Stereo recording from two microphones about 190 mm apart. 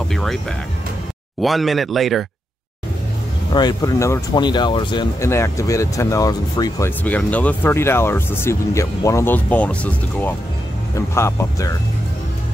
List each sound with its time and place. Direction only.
0.1 s speech: centre (ahead or behind)
3.5 s speech: 20° left (ahead or behind)